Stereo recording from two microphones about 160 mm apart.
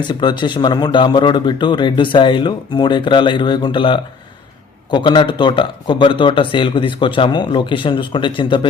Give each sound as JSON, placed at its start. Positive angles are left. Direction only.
{"t": 0.1, "sound": "a man's voice", "side_deg": 25}